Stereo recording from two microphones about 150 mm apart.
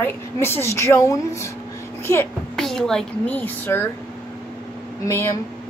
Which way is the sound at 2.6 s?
5° left (ahead or behind).